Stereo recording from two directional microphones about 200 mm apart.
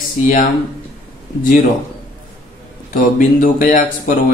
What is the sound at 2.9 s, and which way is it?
Speech, 45° left (ahead or behind).